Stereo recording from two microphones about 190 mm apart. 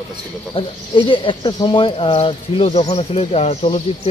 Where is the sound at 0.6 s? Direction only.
25° left (ahead or behind).